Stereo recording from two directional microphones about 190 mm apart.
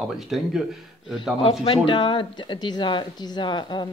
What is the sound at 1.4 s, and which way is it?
Speech, 30° left (ahead or behind).